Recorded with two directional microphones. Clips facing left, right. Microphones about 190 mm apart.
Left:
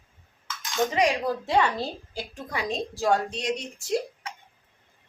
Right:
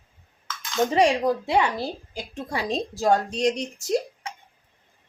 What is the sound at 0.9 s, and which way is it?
Speech, 30° right (ahead or behind).